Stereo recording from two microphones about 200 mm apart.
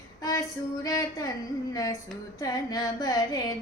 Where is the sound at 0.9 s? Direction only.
20° left (ahead or behind).